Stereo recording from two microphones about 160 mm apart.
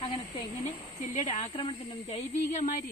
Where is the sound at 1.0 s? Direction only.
50° left (ahead or behind).